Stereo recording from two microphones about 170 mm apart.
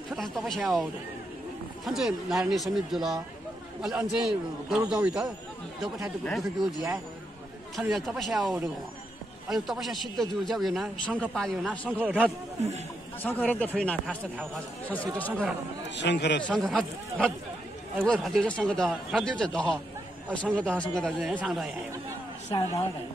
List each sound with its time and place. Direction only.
0.1 s a man's voice: centre (ahead or behind)
1.9 s a man's voice: centre (ahead or behind)
6.2 s a man's voice: centre (ahead or behind)
12.0 s speech: 10° right (ahead or behind)
13.2 s speech: 10° left (ahead or behind)
15.1 s speech: 10° left (ahead or behind)
16.0 s a man's voice: 90° left
16.4 s a man's voice: 5° left (ahead or behind)
22.5 s a woman's voice: 25° left (ahead or behind)